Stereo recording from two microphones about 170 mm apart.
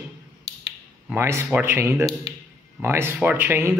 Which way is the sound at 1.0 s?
15° right (ahead or behind).